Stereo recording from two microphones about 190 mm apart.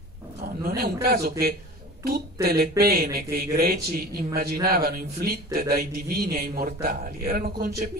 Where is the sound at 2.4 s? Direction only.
55° right (ahead or behind).